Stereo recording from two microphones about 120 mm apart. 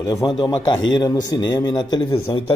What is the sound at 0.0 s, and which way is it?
A man's voice, 30° left (ahead or behind).